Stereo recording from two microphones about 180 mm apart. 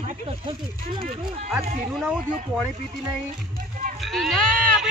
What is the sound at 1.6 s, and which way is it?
Speech, 55° right (ahead or behind).